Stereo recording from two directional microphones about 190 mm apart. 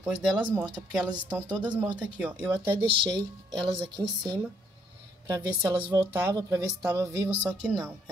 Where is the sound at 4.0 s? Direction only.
25° right (ahead or behind).